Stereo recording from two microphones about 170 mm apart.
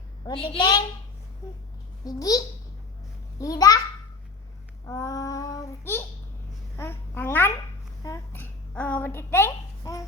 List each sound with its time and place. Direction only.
0.3 s a woman's voice: 25° left (ahead or behind)
2.0 s a woman's voice: 20° left (ahead or behind)
3.4 s a woman's voice: 20° left (ahead or behind)
4.9 s child singing: 20° left (ahead or behind)
6.7 s babbling: 15° left (ahead or behind)
8.0 s a sound: 15° left (ahead or behind)